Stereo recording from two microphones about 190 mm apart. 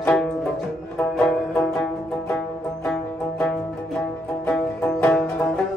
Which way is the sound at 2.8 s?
5° left (ahead or behind).